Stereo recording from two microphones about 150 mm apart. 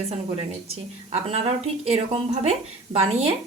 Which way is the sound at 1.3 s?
45° right (ahead or behind).